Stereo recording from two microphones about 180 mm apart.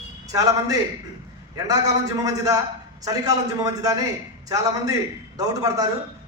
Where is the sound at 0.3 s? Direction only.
20° right (ahead or behind).